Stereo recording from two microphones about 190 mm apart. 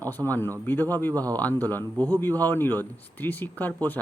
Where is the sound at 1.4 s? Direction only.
10° left (ahead or behind).